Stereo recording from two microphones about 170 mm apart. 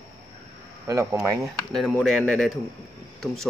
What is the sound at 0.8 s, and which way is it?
Speech, 15° right (ahead or behind).